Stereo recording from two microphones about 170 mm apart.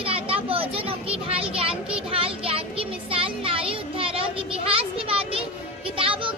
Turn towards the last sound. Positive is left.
turn(degrees=-30)  # may be behind; listen again after turning